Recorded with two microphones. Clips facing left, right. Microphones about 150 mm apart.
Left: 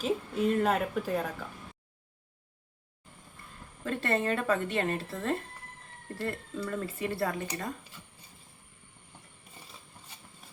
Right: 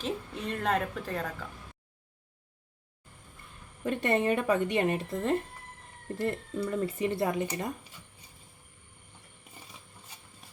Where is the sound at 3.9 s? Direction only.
15° right (ahead or behind).